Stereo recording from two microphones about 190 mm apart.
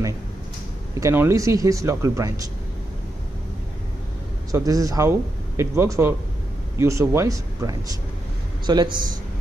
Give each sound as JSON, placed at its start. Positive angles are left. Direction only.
{"t": 0.9, "sound": "speech", "side_deg": -15}
{"t": 4.5, "sound": "a man's voice", "side_deg": -20}